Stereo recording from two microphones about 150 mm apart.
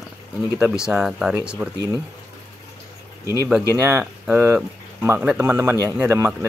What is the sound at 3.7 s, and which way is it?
Speech, 15° right (ahead or behind).